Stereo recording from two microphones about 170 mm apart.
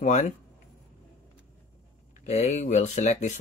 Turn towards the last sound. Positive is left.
turn(degrees=45)  # may be behind; listen again after turning